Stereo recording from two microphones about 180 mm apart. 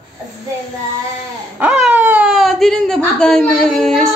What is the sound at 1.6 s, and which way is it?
Speech, 10° right (ahead or behind).